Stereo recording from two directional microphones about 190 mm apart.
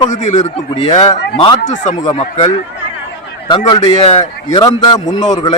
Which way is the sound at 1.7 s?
40° left (ahead or behind).